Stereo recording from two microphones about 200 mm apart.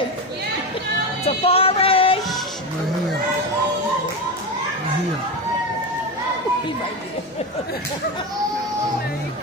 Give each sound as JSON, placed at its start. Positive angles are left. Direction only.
{"t": 1.2, "sound": "music", "side_deg": 30}